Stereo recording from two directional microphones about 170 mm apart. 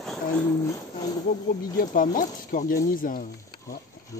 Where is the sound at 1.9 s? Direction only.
55° left (ahead or behind).